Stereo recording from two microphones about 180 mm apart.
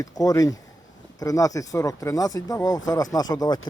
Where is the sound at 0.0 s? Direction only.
20° left (ahead or behind).